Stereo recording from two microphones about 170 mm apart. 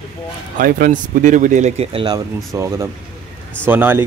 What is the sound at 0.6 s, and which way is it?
Speech, 55° right (ahead or behind).